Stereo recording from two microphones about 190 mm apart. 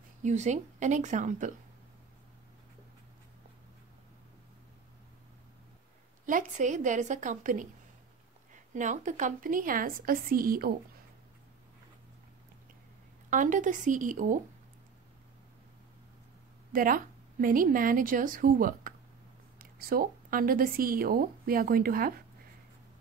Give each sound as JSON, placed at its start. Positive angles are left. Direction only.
{"t": 0.2, "sound": "a woman's voice", "side_deg": -40}
{"t": 6.2, "sound": "a woman's voice", "side_deg": -40}
{"t": 8.7, "sound": "a woman's voice", "side_deg": -40}
{"t": 13.3, "sound": "a woman's voice", "side_deg": -40}
{"t": 16.7, "sound": "a woman's voice", "side_deg": -45}